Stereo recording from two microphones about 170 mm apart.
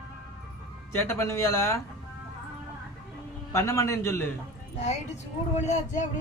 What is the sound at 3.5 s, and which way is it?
Speech, 20° left (ahead or behind).